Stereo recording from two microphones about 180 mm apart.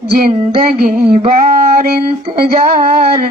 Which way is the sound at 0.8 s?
55° right (ahead or behind).